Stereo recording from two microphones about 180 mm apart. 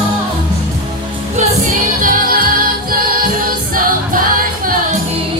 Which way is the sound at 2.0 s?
50° right (ahead or behind).